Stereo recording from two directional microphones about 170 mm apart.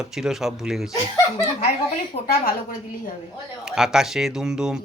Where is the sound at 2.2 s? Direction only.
60° left (ahead or behind).